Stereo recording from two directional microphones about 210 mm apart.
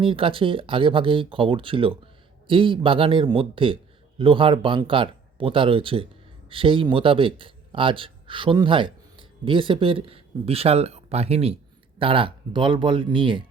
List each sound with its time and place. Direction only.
0.0 s a man's voice: 25° right (ahead or behind)